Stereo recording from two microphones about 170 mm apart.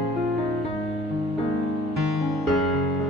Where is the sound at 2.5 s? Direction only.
Centre (ahead or behind).